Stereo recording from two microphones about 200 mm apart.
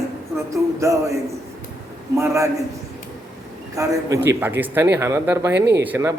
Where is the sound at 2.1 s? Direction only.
15° right (ahead or behind).